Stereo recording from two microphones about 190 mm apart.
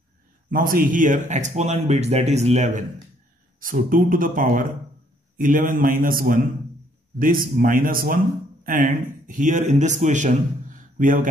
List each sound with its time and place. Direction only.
0.5 s speech: 45° right (ahead or behind)